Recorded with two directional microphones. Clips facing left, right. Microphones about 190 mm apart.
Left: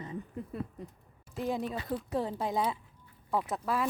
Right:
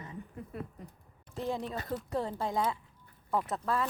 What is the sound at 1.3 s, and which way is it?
Speech, 15° left (ahead or behind).